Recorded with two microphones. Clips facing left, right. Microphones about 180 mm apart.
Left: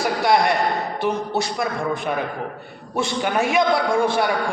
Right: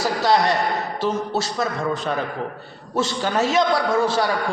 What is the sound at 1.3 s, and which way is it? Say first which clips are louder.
A man's voice: even; 15° left (ahead or behind).